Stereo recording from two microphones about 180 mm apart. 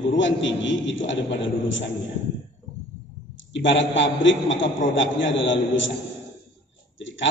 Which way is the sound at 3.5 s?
90° left.